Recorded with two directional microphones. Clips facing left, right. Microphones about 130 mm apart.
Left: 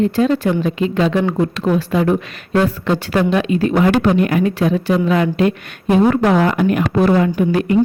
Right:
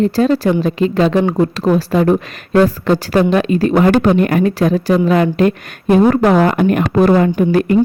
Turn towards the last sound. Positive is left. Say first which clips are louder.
# right 3 dB
turn(degrees=-45)  # may be behind; listen again after turning